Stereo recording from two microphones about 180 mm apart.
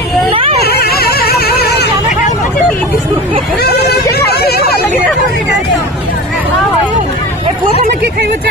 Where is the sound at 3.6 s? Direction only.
60° left (ahead or behind).